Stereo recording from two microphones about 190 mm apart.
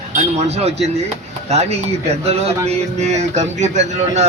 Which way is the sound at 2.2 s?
35° right (ahead or behind).